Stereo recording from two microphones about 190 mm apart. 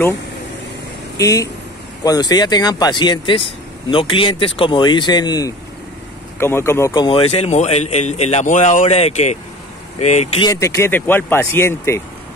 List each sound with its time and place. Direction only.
1.1 s a man's voice: 15° left (ahead or behind); by 10.5 s 35° left (ahead or behind)
10.5 s speech: 15° left (ahead or behind)